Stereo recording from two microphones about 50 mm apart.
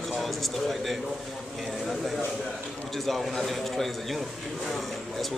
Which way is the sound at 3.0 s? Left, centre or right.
Centre.